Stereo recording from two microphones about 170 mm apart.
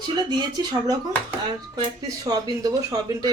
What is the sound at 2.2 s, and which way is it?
Speech, 20° right (ahead or behind).